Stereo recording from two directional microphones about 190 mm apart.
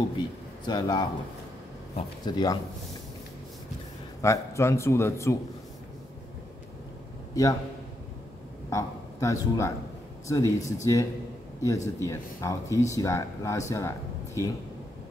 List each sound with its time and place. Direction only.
0.7 s speech: 20° left (ahead or behind)
4.2 s speech: 15° left (ahead or behind)
8.6 s a man's voice: 15° left (ahead or behind)